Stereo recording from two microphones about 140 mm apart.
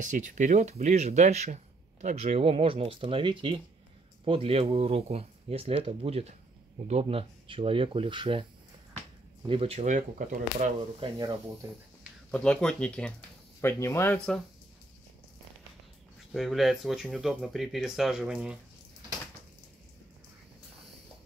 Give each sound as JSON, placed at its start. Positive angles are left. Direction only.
{"t": 0.0, "sound": "speech", "side_deg": -60}
{"t": 9.5, "sound": "speech", "side_deg": -45}
{"t": 9.8, "sound": "speech", "side_deg": -65}
{"t": 11.0, "sound": "speech", "side_deg": -30}
{"t": 12.3, "sound": "speech", "side_deg": 5}
{"t": 13.6, "sound": "speech", "side_deg": 20}
{"t": 14.1, "sound": "speech", "side_deg": 5}
{"t": 16.3, "sound": "speech", "side_deg": 0}